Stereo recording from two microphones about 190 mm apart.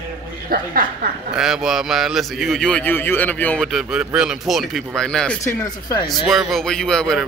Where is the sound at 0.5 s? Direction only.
50° right (ahead or behind).